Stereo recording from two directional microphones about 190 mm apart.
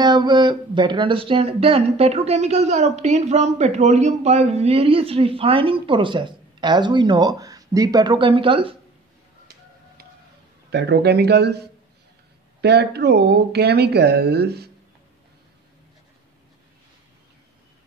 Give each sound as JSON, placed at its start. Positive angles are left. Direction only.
{"t": 0.0, "sound": "speech", "side_deg": -20}
{"t": 10.7, "sound": "speech", "side_deg": -60}